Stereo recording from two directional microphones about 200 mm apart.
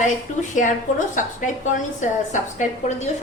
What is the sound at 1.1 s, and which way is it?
A woman's voice, 40° left (ahead or behind).